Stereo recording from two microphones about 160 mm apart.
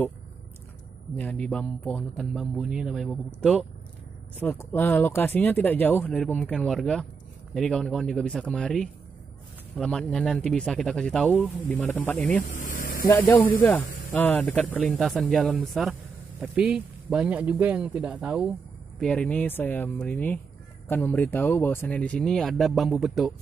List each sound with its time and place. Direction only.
1.1 s speech: 10° left (ahead or behind)
12.4 s vehicle: 55° left (ahead or behind)
13.1 s speech: 10° left (ahead or behind); by 18.5 s 5° right (ahead or behind)
18.9 s speech: 5° left (ahead or behind)